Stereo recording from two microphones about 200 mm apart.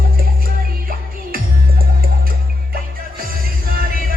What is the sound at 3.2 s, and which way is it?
Music, 45° right (ahead or behind).